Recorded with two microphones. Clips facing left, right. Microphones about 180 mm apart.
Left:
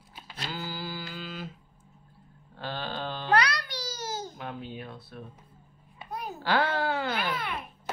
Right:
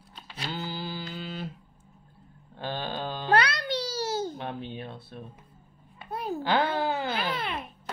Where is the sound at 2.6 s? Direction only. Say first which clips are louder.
Right 2 dB; 20° right (ahead or behind).